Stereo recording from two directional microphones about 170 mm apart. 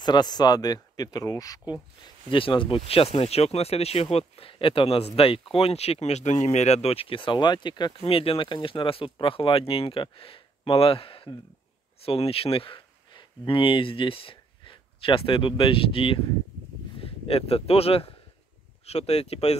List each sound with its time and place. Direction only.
0.0 s speech: 25° left (ahead or behind)